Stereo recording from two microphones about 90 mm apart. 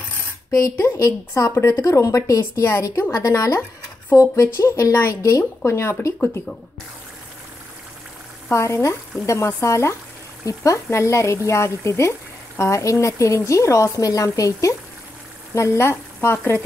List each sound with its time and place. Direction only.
0.5 s speech: 35° left (ahead or behind)
5.4 s frying: 25° left (ahead or behind)
8.5 s speech: 30° left (ahead or behind)
15.5 s frying: 30° left (ahead or behind)